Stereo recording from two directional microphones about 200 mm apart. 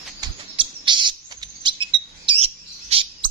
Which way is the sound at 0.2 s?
25° right (ahead or behind).